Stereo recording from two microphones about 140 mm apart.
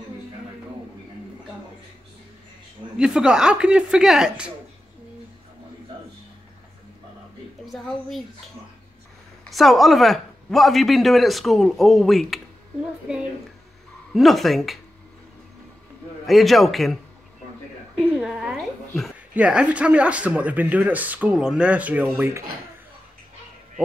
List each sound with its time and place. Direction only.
3.0 s speech: 5° right (ahead or behind)
7.6 s a sound: centre (ahead or behind)
9.5 s speech: centre (ahead or behind)
14.1 s speech: centre (ahead or behind)
16.3 s speech: centre (ahead or behind)
17.9 s a sound: 5° right (ahead or behind)
19.3 s speech: 10° right (ahead or behind)